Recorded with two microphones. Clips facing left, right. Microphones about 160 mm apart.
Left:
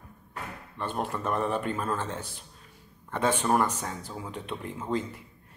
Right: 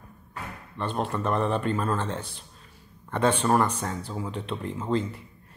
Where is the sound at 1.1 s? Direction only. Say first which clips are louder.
Right 3 dB; 10° left (ahead or behind).